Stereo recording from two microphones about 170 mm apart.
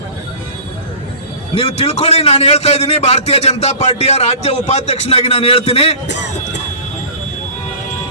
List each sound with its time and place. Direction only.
1.5 s a man's voice: 40° left (ahead or behind)
6.1 s speech: 90° left